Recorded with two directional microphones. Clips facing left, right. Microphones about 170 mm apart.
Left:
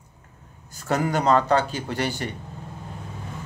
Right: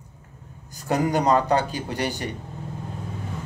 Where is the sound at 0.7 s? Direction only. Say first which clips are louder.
Right 1 dB; 15° right (ahead or behind).